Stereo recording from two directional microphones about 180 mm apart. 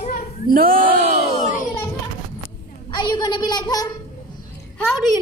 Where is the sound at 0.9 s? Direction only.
40° right (ahead or behind).